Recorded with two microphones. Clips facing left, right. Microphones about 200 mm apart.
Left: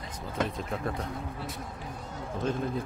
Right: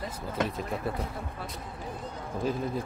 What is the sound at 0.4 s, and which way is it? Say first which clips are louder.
Speech: even; 5° right (ahead or behind).